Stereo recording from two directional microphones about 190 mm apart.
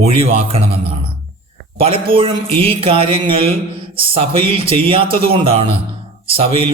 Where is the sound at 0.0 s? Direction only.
30° right (ahead or behind).